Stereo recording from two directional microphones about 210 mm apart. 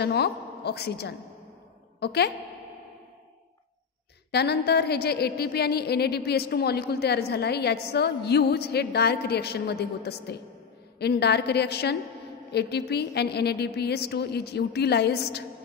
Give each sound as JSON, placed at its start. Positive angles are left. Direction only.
{"t": 0.0, "sound": "a woman's voice", "side_deg": 50}
{"t": 4.3, "sound": "a woman's voice", "side_deg": 50}